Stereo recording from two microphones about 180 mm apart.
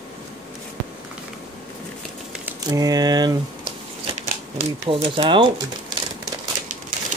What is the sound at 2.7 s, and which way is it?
Speech, 20° right (ahead or behind).